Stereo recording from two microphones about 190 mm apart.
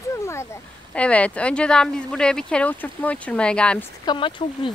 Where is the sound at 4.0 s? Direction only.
25° left (ahead or behind).